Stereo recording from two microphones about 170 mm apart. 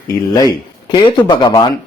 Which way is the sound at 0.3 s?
25° left (ahead or behind).